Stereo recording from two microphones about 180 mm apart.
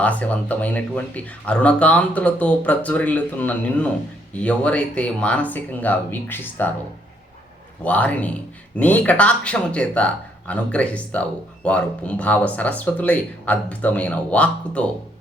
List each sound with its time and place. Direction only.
0.0 s speech: 10° left (ahead or behind)
7.9 s speech: 10° left (ahead or behind)